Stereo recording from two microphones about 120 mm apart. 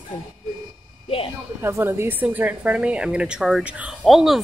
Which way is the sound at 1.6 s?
20° right (ahead or behind).